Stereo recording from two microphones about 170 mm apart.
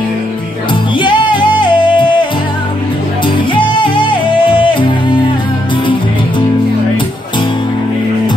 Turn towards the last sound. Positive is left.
turn(degrees=30)  # may be behind; listen again after turning